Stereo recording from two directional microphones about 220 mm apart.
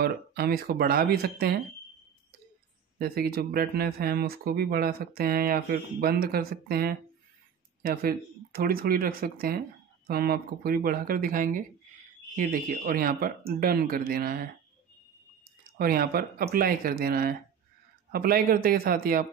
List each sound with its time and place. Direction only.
0.0 s speech: 45° right (ahead or behind)
3.0 s speech: 45° right (ahead or behind)
15.8 s speech: 40° right (ahead or behind)